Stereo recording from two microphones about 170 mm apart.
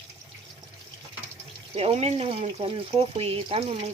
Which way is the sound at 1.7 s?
35° right (ahead or behind).